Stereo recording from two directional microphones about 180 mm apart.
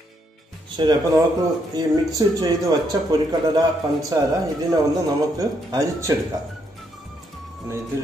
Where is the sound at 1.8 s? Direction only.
20° right (ahead or behind).